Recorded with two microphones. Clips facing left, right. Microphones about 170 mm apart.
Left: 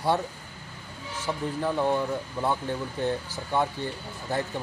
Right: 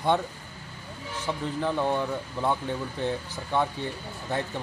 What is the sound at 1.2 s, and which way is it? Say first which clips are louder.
Speech: even; 5° left (ahead or behind).